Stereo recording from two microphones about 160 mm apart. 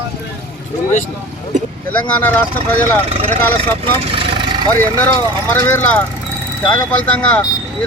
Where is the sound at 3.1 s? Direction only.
40° right (ahead or behind).